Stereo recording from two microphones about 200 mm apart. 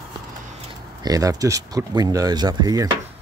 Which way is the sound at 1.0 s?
15° right (ahead or behind).